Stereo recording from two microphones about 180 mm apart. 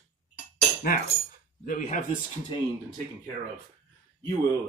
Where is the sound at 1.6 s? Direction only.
45° left (ahead or behind).